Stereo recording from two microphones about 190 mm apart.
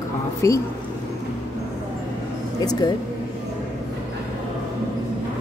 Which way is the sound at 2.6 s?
20° left (ahead or behind).